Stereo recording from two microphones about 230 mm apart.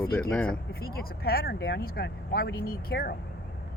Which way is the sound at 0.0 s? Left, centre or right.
Centre.